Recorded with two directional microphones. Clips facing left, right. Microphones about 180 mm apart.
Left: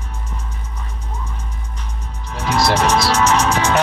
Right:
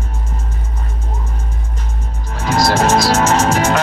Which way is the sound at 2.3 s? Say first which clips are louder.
Right 2 dB; 45° right (ahead or behind).